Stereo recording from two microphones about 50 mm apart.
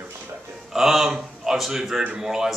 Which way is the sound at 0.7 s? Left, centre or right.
Centre.